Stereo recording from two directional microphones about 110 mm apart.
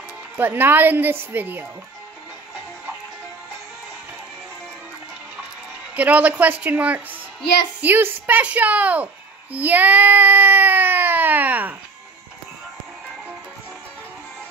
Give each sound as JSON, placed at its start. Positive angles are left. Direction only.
{"t": 0.4, "sound": "a woman's voice", "side_deg": -20}
{"t": 5.9, "sound": "a woman's voice", "side_deg": -15}